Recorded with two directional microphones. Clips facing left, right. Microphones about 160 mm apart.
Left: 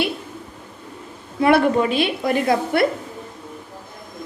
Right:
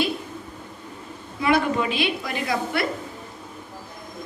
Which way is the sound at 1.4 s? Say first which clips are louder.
Left 6 dB; 55° left (ahead or behind).